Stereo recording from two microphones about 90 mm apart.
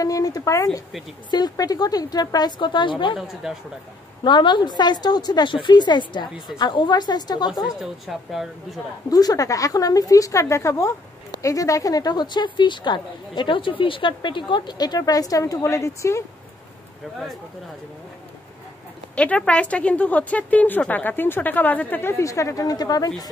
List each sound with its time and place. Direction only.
0.0 s a woman's voice: 40° left (ahead or behind); by 3.2 s 65° left (ahead or behind)
3.2 s speech: 5° right (ahead or behind)
4.2 s a woman's voice: 60° left (ahead or behind)
7.6 s speech: 5° right (ahead or behind)
9.1 s a woman's voice: 45° left (ahead or behind)
19.1 s a woman's voice: 15° left (ahead or behind)
22.1 s a woman's voice: 35° left (ahead or behind)